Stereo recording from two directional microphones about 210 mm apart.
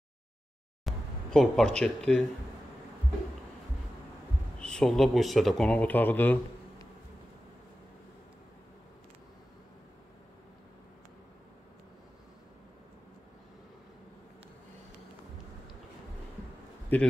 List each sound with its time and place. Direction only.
0.8 s speech: centre (ahead or behind)
4.6 s speech: 5° left (ahead or behind)
16.9 s a man's voice: 10° left (ahead or behind)